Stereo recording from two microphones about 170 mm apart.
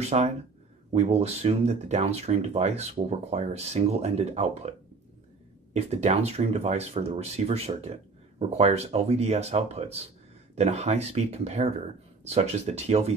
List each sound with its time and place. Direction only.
0.0 s speech: 40° right (ahead or behind)